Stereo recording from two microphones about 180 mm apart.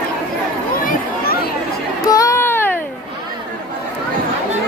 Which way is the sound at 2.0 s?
20° left (ahead or behind).